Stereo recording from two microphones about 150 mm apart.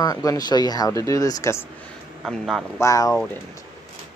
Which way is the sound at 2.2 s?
Centre (ahead or behind).